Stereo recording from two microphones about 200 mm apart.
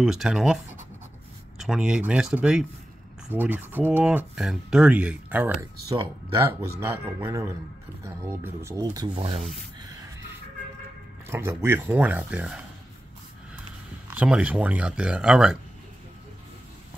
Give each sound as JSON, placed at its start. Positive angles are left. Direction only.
{"t": 0.0, "sound": "speech", "side_deg": -5}
{"t": 1.6, "sound": "speech", "side_deg": -5}
{"t": 11.2, "sound": "speech", "side_deg": -10}
{"t": 14.1, "sound": "speech", "side_deg": -5}